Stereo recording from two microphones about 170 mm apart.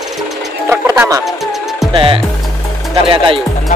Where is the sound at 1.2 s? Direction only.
Centre (ahead or behind).